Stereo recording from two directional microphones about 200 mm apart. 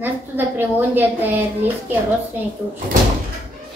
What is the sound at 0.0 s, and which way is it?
A woman's voice, 10° right (ahead or behind).